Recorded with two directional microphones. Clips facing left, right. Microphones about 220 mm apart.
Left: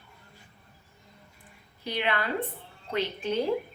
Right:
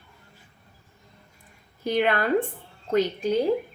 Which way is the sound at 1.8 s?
45° right (ahead or behind).